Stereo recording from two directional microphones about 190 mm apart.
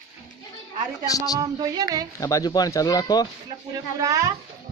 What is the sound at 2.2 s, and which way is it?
Speech, 20° left (ahead or behind).